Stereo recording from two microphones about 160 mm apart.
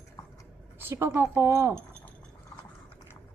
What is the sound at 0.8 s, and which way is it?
Speech, 15° right (ahead or behind).